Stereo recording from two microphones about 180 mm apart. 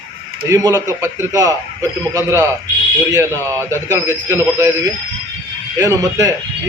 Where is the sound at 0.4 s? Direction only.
15° right (ahead or behind).